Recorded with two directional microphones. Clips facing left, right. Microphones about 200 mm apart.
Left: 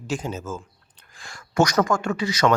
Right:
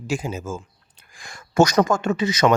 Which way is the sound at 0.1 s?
10° right (ahead or behind).